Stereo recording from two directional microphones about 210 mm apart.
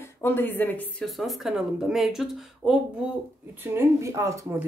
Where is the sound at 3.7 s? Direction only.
15° right (ahead or behind).